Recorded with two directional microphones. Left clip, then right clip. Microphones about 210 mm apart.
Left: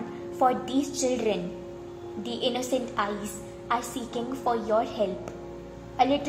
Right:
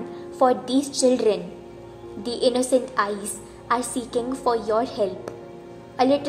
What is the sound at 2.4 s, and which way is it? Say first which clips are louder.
A woman's voice: right 8 dB; 15° right (ahead or behind).